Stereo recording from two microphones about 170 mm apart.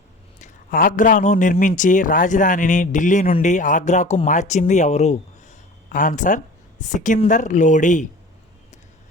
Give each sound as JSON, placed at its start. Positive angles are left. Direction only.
{"t": 0.3, "sound": "a man's voice", "side_deg": 50}